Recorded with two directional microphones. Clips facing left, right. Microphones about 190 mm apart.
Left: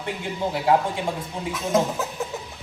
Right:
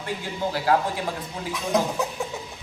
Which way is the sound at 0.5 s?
25° left (ahead or behind).